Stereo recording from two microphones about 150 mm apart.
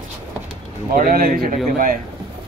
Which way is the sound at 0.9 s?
75° right (ahead or behind).